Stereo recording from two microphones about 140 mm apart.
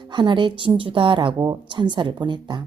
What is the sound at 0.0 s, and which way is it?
Speech, 35° right (ahead or behind).